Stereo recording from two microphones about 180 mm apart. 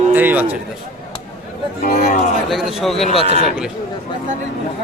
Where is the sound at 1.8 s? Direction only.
55° left (ahead or behind).